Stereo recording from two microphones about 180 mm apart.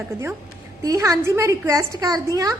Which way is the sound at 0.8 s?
20° right (ahead or behind).